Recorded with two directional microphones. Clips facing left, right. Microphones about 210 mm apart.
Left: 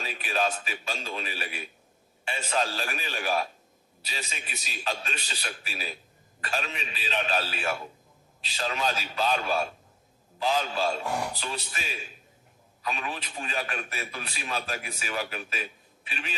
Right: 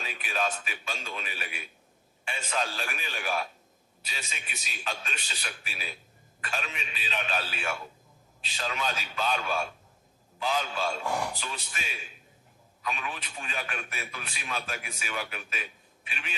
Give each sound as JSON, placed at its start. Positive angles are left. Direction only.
{"t": 0.0, "sound": "a man's voice", "side_deg": 35}
{"t": 12.8, "sound": "a man's voice", "side_deg": 35}